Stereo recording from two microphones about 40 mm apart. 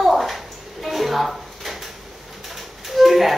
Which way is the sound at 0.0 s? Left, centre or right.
Centre.